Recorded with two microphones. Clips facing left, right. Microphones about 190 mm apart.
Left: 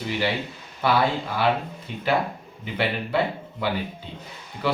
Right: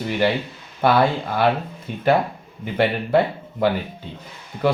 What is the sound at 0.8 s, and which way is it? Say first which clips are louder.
Speech: right 4 dB; 55° right (ahead or behind).